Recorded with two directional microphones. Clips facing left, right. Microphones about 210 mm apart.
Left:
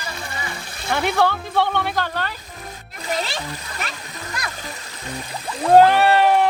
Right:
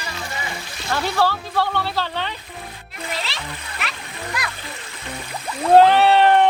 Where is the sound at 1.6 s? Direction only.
20° left (ahead or behind).